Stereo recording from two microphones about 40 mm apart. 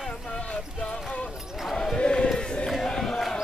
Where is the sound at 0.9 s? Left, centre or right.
Left.